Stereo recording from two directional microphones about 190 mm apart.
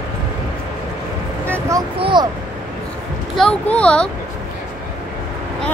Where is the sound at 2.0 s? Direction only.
25° right (ahead or behind).